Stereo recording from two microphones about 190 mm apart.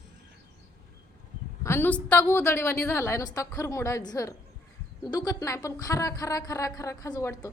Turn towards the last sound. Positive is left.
turn(degrees=15)  # may be behind; listen again after turning